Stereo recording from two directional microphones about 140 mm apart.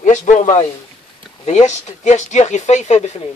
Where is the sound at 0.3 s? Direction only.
55° left (ahead or behind).